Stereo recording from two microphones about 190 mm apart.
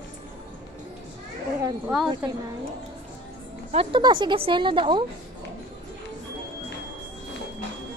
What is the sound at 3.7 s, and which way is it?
Speech, 30° right (ahead or behind).